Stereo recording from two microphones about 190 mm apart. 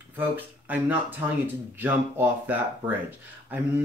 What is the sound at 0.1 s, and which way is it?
Speech, 10° right (ahead or behind).